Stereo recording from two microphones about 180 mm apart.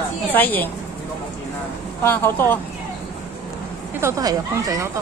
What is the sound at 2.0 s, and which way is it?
Speech, 15° left (ahead or behind).